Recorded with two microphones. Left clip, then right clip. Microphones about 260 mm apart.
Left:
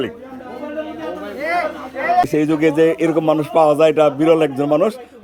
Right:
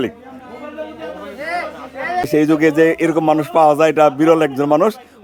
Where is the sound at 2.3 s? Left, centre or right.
Centre.